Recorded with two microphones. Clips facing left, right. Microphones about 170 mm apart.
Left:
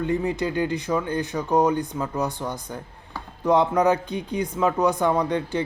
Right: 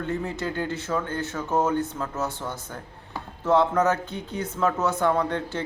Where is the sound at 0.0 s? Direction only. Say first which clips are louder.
Left 5 dB; 15° left (ahead or behind).